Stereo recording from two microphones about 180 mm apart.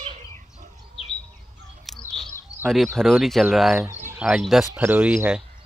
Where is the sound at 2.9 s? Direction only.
Centre (ahead or behind).